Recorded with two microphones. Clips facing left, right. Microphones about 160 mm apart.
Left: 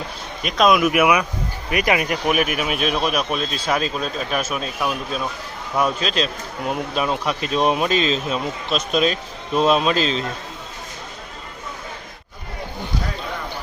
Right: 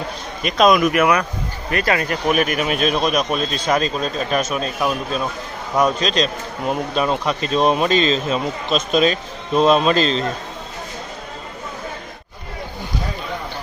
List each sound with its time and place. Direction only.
0.4 s speech: centre (ahead or behind)